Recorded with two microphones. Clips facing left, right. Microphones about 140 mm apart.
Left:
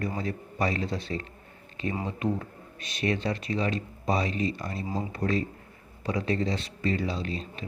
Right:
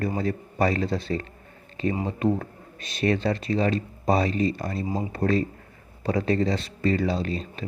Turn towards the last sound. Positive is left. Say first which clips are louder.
# right 5 dB
turn(degrees=-40)  # may be behind; listen again after turning